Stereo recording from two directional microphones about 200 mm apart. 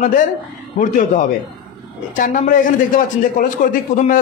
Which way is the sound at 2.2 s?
40° left (ahead or behind).